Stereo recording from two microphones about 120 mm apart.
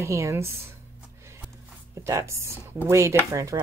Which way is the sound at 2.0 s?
25° right (ahead or behind).